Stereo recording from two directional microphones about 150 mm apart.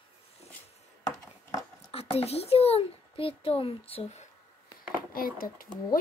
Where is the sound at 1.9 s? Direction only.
40° left (ahead or behind).